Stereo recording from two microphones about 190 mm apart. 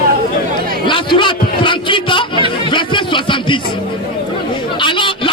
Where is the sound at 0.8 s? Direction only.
25° left (ahead or behind).